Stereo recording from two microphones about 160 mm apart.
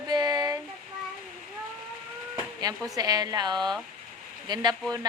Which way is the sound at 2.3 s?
25° right (ahead or behind).